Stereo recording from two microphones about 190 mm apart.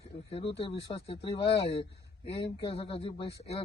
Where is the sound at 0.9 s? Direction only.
30° left (ahead or behind).